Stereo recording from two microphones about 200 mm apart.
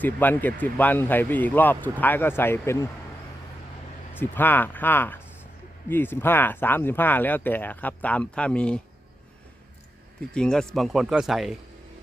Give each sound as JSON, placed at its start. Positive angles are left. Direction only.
{"t": 0.0, "sound": "speech", "side_deg": 10}
{"t": 4.1, "sound": "speech", "side_deg": 10}
{"t": 10.2, "sound": "speech", "side_deg": 5}